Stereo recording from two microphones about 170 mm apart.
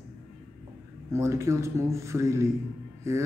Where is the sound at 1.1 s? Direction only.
15° right (ahead or behind).